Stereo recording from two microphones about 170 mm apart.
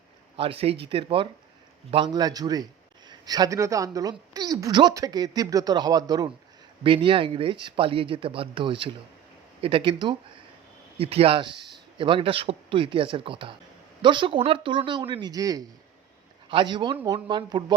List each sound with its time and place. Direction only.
0.3 s a woman's voice: 35° right (ahead or behind)